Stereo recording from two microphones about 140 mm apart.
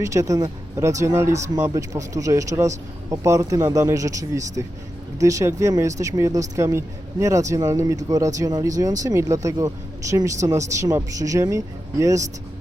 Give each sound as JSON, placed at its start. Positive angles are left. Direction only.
{"t": 0.0, "sound": "speech", "side_deg": -20}